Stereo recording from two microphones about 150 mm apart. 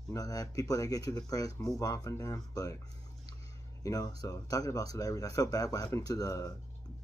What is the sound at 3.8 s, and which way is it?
Speech, 25° left (ahead or behind).